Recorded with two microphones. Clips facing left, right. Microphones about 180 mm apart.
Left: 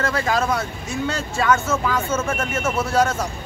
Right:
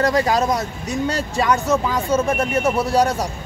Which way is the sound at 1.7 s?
15° right (ahead or behind).